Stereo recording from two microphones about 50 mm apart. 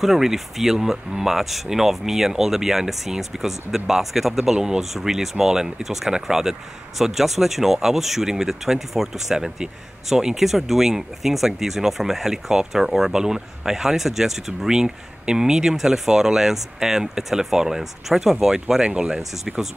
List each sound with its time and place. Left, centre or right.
0.0 s speech: centre